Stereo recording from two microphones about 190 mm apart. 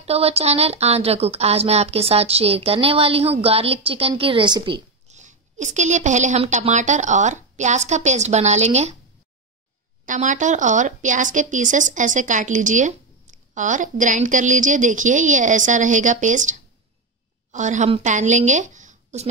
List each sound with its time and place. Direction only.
0.0 s speech: 30° right (ahead or behind)
10.0 s a woman's voice: 40° right (ahead or behind)